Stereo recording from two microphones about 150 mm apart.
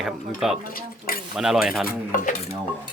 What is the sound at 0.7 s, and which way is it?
Speech, 75° left (ahead or behind).